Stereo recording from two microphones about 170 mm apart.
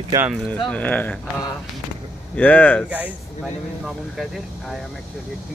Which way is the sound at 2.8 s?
10° right (ahead or behind).